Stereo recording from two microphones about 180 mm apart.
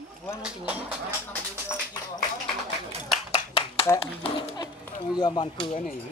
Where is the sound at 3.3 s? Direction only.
30° left (ahead or behind).